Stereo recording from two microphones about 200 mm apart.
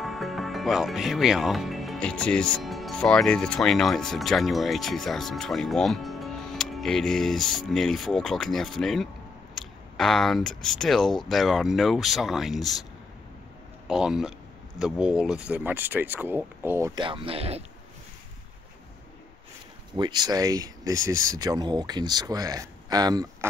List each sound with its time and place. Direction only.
0.0 s speech: centre (ahead or behind)
13.8 s speech: 5° right (ahead or behind); by 17.6 s 30° right (ahead or behind)
20.0 s speech: 20° right (ahead or behind)